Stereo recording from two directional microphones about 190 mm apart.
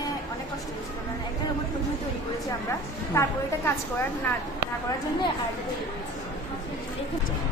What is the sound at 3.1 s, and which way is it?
Speech, 15° left (ahead or behind).